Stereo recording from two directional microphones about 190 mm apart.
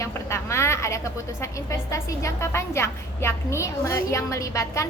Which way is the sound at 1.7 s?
15° left (ahead or behind).